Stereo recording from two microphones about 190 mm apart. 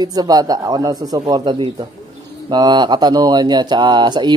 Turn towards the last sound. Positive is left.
turn(degrees=-25)  # may be behind; listen again after turning